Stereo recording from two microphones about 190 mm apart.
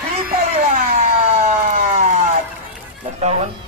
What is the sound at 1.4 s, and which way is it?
Siren, 35° right (ahead or behind).